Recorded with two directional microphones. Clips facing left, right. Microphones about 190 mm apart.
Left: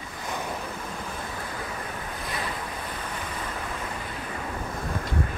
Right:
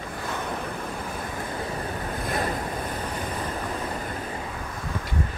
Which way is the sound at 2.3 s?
45° right (ahead or behind).